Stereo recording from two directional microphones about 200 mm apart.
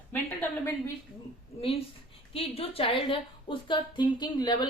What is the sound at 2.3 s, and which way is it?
A woman's voice, 30° left (ahead or behind).